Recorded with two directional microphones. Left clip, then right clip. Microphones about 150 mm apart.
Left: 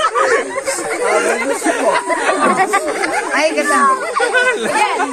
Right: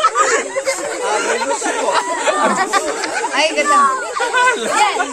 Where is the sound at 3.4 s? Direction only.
25° right (ahead or behind).